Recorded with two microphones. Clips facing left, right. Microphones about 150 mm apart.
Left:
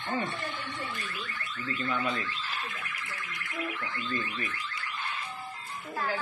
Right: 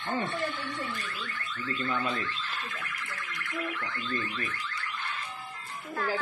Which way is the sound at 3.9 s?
30° left (ahead or behind).